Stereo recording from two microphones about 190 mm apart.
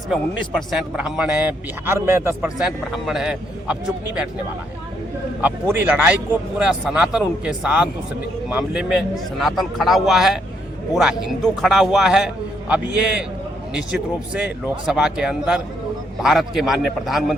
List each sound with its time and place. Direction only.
0.7 s a man's voice: 5° right (ahead or behind)
5.4 s a man's voice: 10° right (ahead or behind)